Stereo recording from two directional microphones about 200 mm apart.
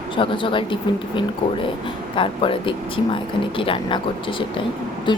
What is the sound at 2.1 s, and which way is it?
Speech, 25° left (ahead or behind).